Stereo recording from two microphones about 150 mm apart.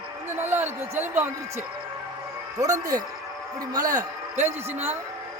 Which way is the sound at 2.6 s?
25° right (ahead or behind).